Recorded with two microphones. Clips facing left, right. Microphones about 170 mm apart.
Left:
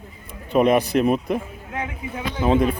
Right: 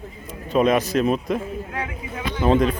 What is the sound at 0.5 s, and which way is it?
Speech, 15° left (ahead or behind).